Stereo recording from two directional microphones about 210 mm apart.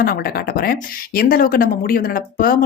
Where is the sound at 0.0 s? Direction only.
45° left (ahead or behind).